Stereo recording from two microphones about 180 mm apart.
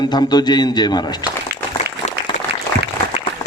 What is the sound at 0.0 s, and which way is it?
A man's voice, 25° left (ahead or behind).